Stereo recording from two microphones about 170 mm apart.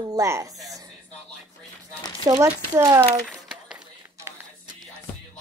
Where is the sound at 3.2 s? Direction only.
5° right (ahead or behind).